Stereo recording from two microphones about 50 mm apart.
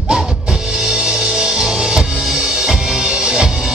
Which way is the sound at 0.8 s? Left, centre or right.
Centre.